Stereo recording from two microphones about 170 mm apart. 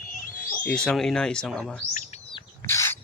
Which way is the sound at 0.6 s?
5° left (ahead or behind).